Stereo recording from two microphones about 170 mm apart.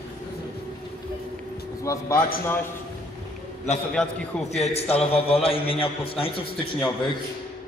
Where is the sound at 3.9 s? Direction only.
Centre (ahead or behind).